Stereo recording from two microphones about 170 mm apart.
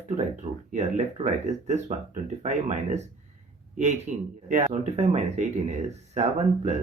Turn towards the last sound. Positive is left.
turn(degrees=-40)  # may be behind; listen again after turning